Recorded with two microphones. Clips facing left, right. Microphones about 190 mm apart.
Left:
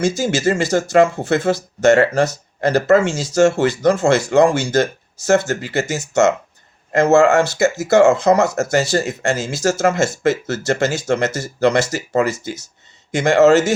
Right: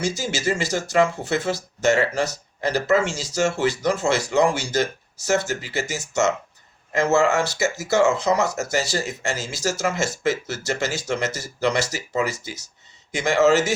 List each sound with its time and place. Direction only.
0.2 s speech: 50° left (ahead or behind)